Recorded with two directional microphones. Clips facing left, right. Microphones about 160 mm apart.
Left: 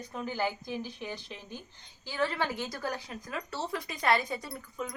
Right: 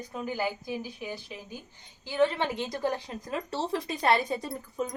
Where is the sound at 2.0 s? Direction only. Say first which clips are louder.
Right 5 dB; 20° right (ahead or behind).